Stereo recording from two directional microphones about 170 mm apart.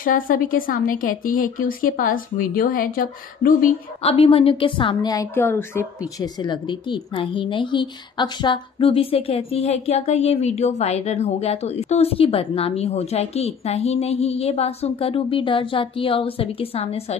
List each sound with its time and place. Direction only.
0.0 s speech: 55° left (ahead or behind)
4.0 s a woman's voice: 35° left (ahead or behind)
5.3 s speech: 15° left (ahead or behind)
6.4 s a woman's voice: 30° left (ahead or behind)